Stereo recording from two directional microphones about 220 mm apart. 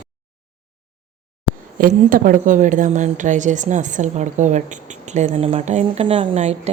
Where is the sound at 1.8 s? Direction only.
40° right (ahead or behind).